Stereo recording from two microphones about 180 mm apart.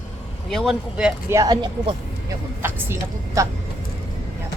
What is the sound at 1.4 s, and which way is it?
Speech, 20° right (ahead or behind).